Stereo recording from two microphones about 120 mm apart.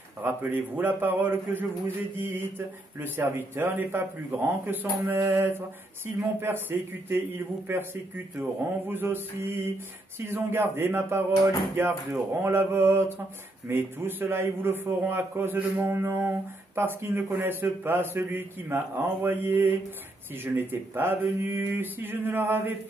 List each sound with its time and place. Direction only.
0.2 s a man's voice: 15° right (ahead or behind)